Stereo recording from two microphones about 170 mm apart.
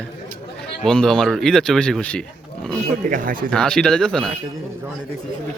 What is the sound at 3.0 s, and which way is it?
Speech, 50° right (ahead or behind).